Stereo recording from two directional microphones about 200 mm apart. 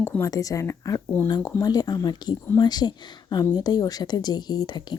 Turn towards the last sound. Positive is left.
turn(degrees=20)  # may be behind; listen again after turning